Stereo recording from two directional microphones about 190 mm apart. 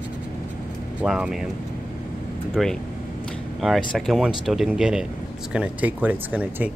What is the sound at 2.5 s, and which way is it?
Speech, centre (ahead or behind).